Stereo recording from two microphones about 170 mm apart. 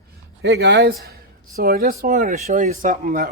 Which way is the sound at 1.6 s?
65° right (ahead or behind).